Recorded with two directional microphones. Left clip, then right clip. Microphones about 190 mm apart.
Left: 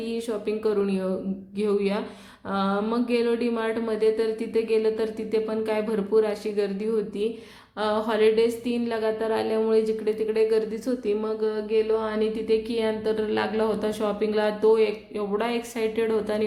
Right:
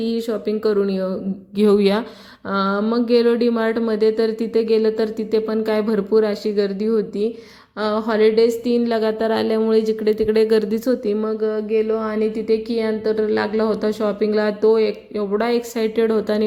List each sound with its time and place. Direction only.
0.0 s speech: 35° right (ahead or behind)
1.5 s speech: 40° right (ahead or behind)